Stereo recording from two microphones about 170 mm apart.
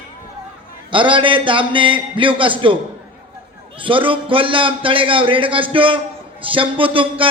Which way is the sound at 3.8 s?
30° right (ahead or behind).